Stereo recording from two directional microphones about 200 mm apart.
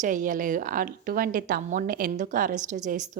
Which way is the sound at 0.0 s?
40° right (ahead or behind).